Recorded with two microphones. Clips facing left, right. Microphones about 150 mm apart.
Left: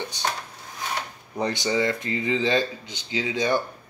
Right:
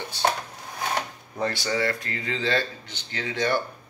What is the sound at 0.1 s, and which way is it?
Speech, 20° left (ahead or behind).